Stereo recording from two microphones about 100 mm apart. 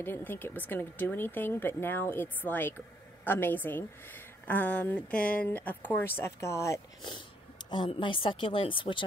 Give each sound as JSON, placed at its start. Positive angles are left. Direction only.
{"t": 0.0, "sound": "a woman's voice", "side_deg": 20}
{"t": 7.0, "sound": "speech", "side_deg": 50}